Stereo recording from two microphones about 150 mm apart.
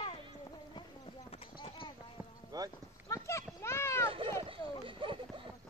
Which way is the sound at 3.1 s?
20° left (ahead or behind).